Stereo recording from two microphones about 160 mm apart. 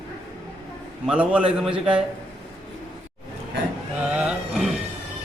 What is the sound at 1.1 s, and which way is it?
Speech, 5° right (ahead or behind).